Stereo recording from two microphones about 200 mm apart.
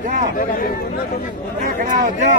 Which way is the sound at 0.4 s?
45° left (ahead or behind).